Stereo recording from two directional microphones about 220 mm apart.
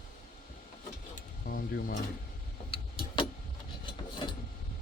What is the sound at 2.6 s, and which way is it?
Vehicle, 25° left (ahead or behind).